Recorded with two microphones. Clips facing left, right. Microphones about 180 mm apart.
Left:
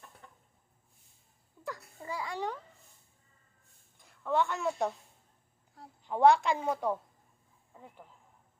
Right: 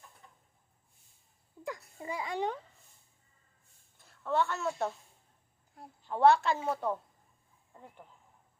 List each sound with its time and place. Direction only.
1.6 s a child's voice: 20° right (ahead or behind)
3.9 s a woman's voice: 15° left (ahead or behind)
6.0 s a woman's voice: 15° left (ahead or behind)